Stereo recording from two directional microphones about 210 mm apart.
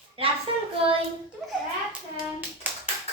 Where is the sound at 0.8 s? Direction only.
25° right (ahead or behind).